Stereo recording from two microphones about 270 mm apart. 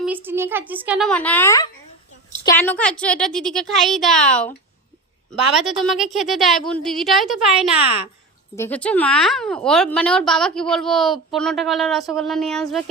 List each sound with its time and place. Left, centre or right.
0.0 s a woman's voice: centre